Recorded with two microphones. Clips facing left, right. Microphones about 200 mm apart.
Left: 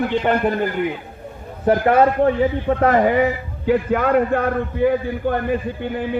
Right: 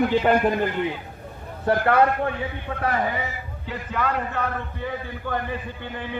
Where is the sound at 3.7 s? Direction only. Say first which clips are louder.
Left 11 dB; 55° left (ahead or behind).